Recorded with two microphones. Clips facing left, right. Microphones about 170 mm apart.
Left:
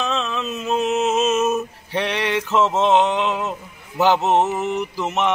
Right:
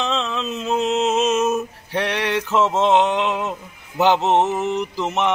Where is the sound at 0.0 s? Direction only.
15° right (ahead or behind).